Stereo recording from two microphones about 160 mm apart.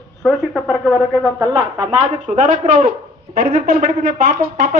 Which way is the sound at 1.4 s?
30° right (ahead or behind).